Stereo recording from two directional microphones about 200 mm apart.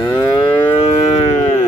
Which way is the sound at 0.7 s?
30° left (ahead or behind).